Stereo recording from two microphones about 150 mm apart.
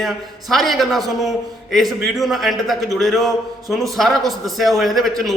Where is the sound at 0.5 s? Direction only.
Centre (ahead or behind).